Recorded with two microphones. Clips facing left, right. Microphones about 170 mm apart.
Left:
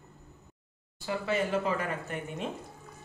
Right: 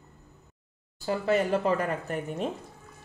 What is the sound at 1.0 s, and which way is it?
Speech, 40° right (ahead or behind).